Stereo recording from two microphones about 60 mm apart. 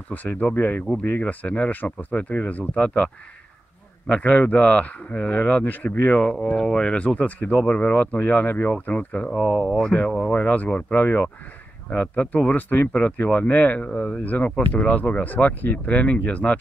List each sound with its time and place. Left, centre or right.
0.1 s speech: left
4.1 s speech: left
6.5 s speech: centre
7.2 s speech: left
7.8 s speech: left
9.3 s speech: centre
10.3 s speech: left